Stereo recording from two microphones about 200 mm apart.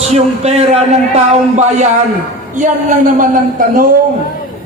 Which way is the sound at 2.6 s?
40° right (ahead or behind).